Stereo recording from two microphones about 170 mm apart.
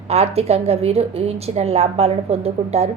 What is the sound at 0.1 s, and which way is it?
A woman's voice, 40° right (ahead or behind).